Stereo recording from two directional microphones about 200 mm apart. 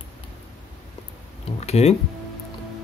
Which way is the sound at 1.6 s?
30° left (ahead or behind).